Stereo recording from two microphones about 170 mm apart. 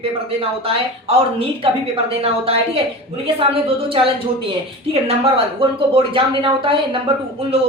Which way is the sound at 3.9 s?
35° right (ahead or behind).